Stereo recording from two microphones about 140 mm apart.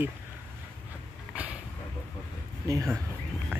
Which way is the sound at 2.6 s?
20° right (ahead or behind).